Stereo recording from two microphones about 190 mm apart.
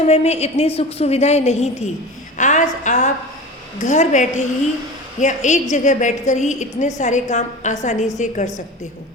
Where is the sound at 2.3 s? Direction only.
40° left (ahead or behind).